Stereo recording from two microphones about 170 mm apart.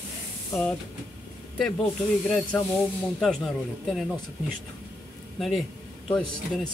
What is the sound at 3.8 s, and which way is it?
Speech, centre (ahead or behind).